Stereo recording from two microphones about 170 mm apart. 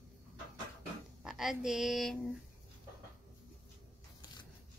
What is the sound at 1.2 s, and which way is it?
A woman's voice, 5° right (ahead or behind).